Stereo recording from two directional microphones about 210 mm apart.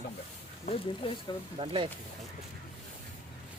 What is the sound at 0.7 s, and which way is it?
Speech, 25° left (ahead or behind).